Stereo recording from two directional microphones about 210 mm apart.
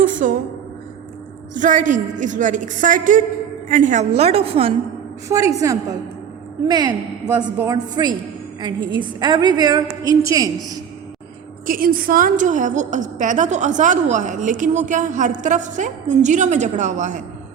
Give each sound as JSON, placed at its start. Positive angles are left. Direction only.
{"t": 0.0, "sound": "a woman's voice", "side_deg": -40}
{"t": 1.5, "sound": "a woman's voice", "side_deg": -35}
{"t": 5.3, "sound": "a woman's voice", "side_deg": -15}
{"t": 11.6, "sound": "a woman's voice", "side_deg": -40}